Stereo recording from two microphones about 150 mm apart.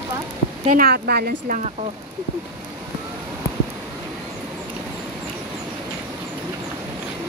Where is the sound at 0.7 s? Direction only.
80° right.